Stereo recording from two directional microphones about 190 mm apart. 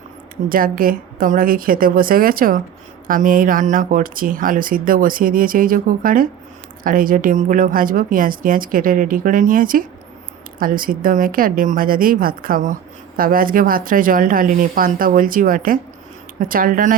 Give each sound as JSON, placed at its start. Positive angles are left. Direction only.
{"t": 0.4, "sound": "speech", "side_deg": -50}